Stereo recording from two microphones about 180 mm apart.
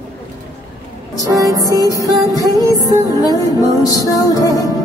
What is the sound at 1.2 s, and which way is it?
Music, 20° right (ahead or behind).